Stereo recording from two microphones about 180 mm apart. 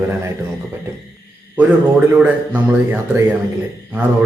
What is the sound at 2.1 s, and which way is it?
A man's voice, 10° right (ahead or behind).